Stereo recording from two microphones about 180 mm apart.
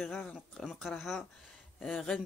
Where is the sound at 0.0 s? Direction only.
Centre (ahead or behind).